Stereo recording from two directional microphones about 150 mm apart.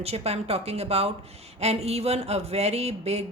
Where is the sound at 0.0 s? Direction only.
45° right (ahead or behind).